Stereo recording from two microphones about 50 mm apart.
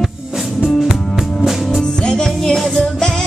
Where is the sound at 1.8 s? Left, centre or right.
Centre.